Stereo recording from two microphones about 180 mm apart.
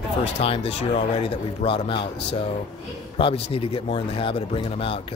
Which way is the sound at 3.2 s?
30° left (ahead or behind).